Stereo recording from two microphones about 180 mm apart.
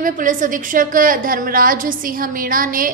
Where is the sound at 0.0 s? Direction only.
45° right (ahead or behind).